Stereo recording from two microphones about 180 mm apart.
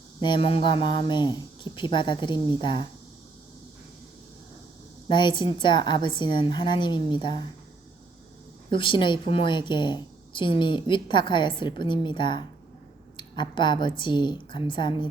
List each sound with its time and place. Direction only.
0.2 s a woman's voice: 30° left (ahead or behind)
5.0 s a woman's voice: 25° left (ahead or behind)
8.7 s a woman's voice: 25° left (ahead or behind)